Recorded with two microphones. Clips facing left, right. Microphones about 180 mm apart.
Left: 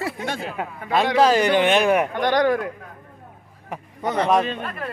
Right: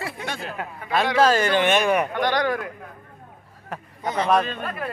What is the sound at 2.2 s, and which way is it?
Speech, 45° left (ahead or behind).